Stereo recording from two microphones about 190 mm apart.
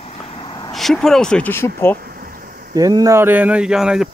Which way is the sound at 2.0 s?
50° right (ahead or behind).